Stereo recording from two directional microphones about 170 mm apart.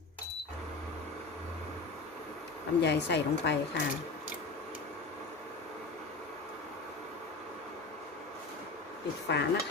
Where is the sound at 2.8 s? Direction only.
85° left.